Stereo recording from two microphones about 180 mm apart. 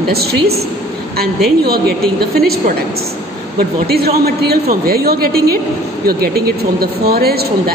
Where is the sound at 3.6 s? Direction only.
60° right (ahead or behind).